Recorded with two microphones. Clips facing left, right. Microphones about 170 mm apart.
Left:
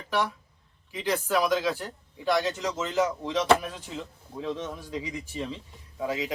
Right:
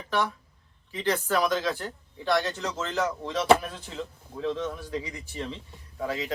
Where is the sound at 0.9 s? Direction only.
10° left (ahead or behind).